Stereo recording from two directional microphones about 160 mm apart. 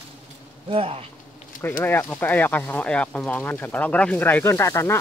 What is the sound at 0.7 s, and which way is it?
Speech, 35° right (ahead or behind).